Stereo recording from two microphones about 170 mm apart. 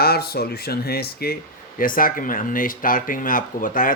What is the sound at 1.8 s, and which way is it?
Speech, 55° left (ahead or behind).